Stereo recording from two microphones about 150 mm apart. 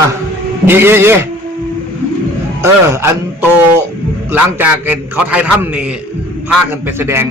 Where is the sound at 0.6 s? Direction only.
15° right (ahead or behind).